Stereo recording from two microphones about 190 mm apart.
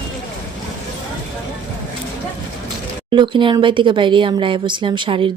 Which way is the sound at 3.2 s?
25° right (ahead or behind).